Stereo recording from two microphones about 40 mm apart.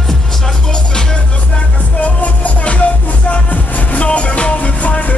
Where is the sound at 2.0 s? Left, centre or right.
Left.